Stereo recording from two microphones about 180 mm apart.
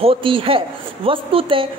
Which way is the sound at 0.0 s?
30° right (ahead or behind).